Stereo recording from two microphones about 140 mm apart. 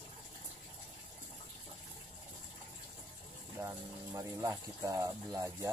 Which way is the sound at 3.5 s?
20° right (ahead or behind).